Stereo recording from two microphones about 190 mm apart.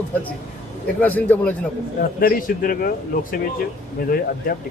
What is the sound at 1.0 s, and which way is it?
Speech, 10° left (ahead or behind).